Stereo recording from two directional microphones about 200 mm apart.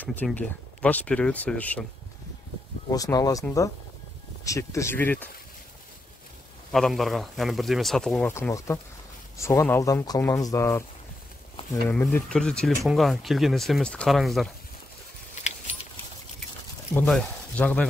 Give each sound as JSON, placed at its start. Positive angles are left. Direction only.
{"t": 0.0, "sound": "speech", "side_deg": 10}
{"t": 2.9, "sound": "speech", "side_deg": 20}
{"t": 6.7, "sound": "speech", "side_deg": 0}
{"t": 8.3, "sound": "speech", "side_deg": 15}
{"t": 11.9, "sound": "speech", "side_deg": 5}
{"t": 15.4, "sound": "keys jangling", "side_deg": 35}
{"t": 16.9, "sound": "speech", "side_deg": 10}